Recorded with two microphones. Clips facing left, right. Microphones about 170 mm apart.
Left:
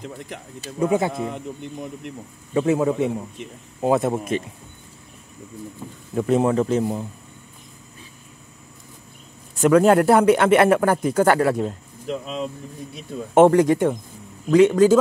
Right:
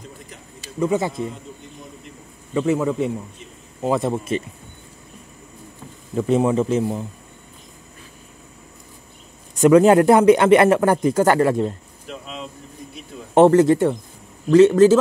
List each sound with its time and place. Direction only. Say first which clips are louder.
1.1 s a man's voice: left 1 dB; 70° left (ahead or behind)
2.5 s speech: left 1 dB; 15° left (ahead or behind)
6.1 s a man's voice: right 1 dB; centre (ahead or behind)
9.6 s a man's voice: right 3 dB; centre (ahead or behind)
12.1 s speech: left 6 dB; 35° left (ahead or behind)
13.3 s speech: right 1 dB; 10° left (ahead or behind)